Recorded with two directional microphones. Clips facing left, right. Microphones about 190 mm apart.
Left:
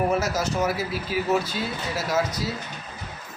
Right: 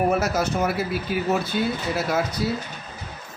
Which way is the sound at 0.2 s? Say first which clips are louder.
Right 2 dB; 60° right (ahead or behind).